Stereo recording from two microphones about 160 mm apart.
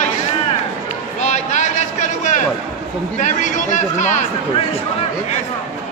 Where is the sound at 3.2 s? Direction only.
50° left (ahead or behind).